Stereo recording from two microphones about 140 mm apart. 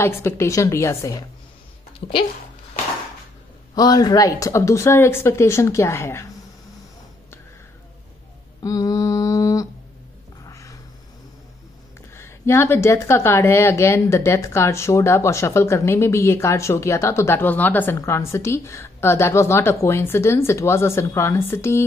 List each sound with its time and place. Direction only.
0.0 s speech: 20° left (ahead or behind)
2.0 s speech: 40° left (ahead or behind)
3.7 s speech: 30° left (ahead or behind)
8.6 s mantra: 25° left (ahead or behind)
10.4 s a sound: 25° left (ahead or behind)
12.2 s speech: 20° left (ahead or behind)